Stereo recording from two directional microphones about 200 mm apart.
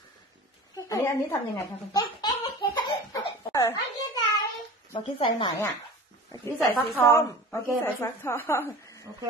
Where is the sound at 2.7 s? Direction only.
25° left (ahead or behind).